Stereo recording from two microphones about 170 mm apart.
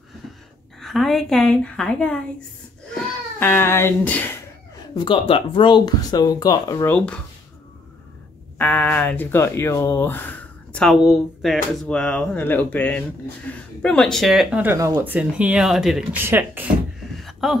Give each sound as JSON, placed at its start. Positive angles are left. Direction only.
{"t": 0.7, "sound": "speech", "side_deg": 0}
{"t": 2.9, "sound": "a sound", "side_deg": 10}
{"t": 4.9, "sound": "speech", "side_deg": 30}
{"t": 8.5, "sound": "speech", "side_deg": 10}
{"t": 15.1, "sound": "speech", "side_deg": -5}
{"t": 17.2, "sound": "a sound", "side_deg": 0}